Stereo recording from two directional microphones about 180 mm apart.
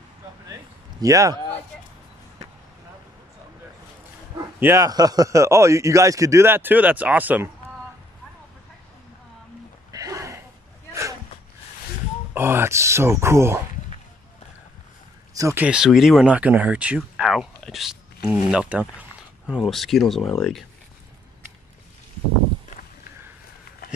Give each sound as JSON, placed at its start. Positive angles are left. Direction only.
{"t": 1.0, "sound": "a man's voice", "side_deg": -20}
{"t": 4.4, "sound": "a man's voice", "side_deg": -15}
{"t": 9.8, "sound": "a sound", "side_deg": -20}
{"t": 12.4, "sound": "a man's voice", "side_deg": -15}
{"t": 15.3, "sound": "speech", "side_deg": -15}